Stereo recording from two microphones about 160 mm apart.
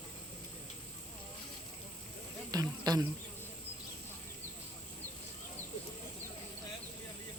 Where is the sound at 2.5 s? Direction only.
25° right (ahead or behind).